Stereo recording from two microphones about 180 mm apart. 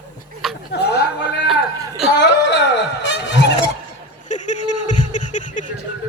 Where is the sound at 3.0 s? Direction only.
80° left.